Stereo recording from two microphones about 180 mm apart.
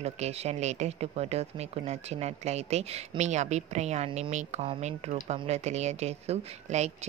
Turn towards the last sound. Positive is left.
turn(degrees=-35)  # may be behind; listen again after turning